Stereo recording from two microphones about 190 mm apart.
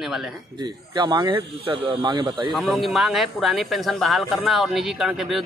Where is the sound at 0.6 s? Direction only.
25° right (ahead or behind).